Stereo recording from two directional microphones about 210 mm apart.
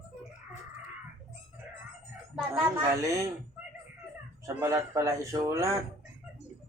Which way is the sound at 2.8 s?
15° right (ahead or behind).